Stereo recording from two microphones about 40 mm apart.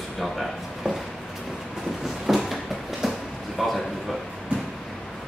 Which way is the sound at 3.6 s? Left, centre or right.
Centre.